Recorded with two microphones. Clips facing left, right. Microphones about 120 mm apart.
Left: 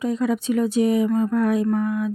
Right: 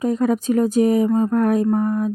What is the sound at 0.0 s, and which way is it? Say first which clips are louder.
Speech: right 3 dB; 45° right (ahead or behind).